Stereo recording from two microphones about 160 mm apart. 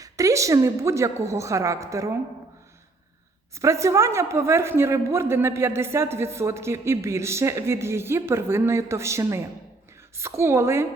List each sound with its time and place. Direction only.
0.0 s a woman's voice: 20° right (ahead or behind)
3.5 s a woman's voice: 20° right (ahead or behind)